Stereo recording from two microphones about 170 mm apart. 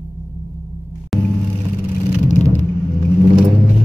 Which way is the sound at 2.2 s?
45° left (ahead or behind).